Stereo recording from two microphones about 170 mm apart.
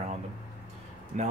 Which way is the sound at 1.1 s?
45° right (ahead or behind).